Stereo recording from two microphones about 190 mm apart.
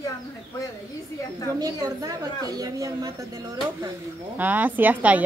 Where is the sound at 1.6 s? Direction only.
20° right (ahead or behind).